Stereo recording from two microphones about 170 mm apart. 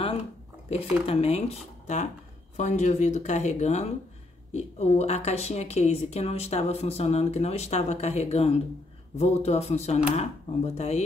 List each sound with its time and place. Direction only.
0.7 s speech: 35° left (ahead or behind)